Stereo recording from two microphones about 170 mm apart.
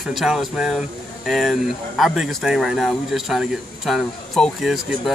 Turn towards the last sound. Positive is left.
turn(degrees=0)  # may be behind; listen again after turning